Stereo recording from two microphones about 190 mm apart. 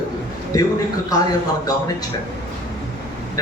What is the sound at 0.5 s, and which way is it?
Speech, 20° left (ahead or behind).